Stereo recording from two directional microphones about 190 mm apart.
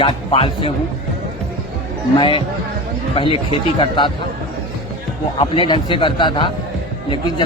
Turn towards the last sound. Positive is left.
turn(degrees=25)  # may be behind; listen again after turning